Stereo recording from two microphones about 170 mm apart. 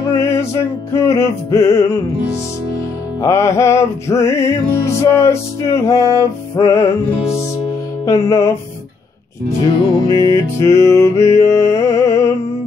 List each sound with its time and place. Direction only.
0.1 s music: 15° left (ahead or behind)
3.2 s music: 15° left (ahead or behind)
8.0 s music: 20° left (ahead or behind)
10.0 s music: 25° right (ahead or behind)
10.6 s music: 15° left (ahead or behind)